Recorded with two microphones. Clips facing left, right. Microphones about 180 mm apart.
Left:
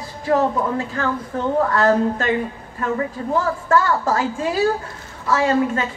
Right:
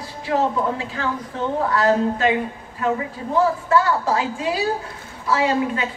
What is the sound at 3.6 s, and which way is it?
A woman's voice, 45° left (ahead or behind).